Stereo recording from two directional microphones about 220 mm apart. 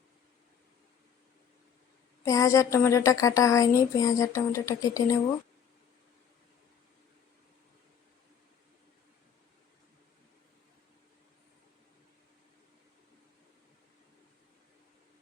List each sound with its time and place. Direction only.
2.2 s speech: 15° left (ahead or behind)